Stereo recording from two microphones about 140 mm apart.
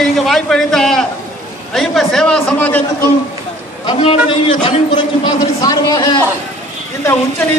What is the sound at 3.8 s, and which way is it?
Speech, 40° left (ahead or behind).